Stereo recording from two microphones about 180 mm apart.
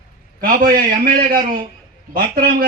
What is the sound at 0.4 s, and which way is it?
A man's voice, 55° right (ahead or behind).